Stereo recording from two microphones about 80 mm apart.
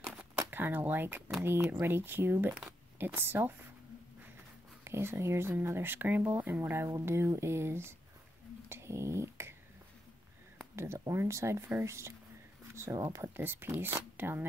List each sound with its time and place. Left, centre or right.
0.4 s speech: right
4.8 s speech: right
8.6 s a sound: right
10.8 s speech: right
13.4 s speech: right